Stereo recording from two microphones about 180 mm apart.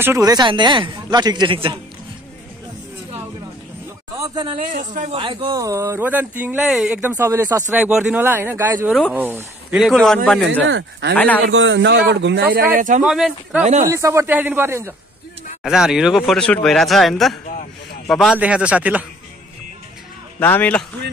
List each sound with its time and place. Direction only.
0.0 s a man's voice: 15° right (ahead or behind)
4.2 s speech: 25° right (ahead or behind)
4.6 s speech: 45° right (ahead or behind)
5.1 s a man's voice: 30° right (ahead or behind)
5.6 s speech: 15° right (ahead or behind); by 10.6 s 5° left (ahead or behind)
10.7 s a man's voice: 80° right
11.1 s a man's voice: 10° left (ahead or behind)
11.4 s a man's voice: 90° right
12.7 s speech: 45° right (ahead or behind)
13.0 s speech: 5° right (ahead or behind)
13.8 s speech: 15° right (ahead or behind)
15.6 s speech: 5° right (ahead or behind)
20.3 s a man's voice: 10° left (ahead or behind)